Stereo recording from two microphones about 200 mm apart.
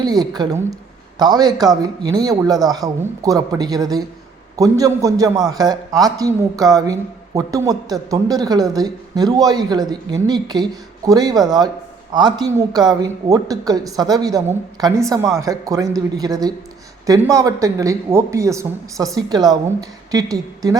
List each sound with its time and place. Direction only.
0.0 s a woman's voice: 20° right (ahead or behind)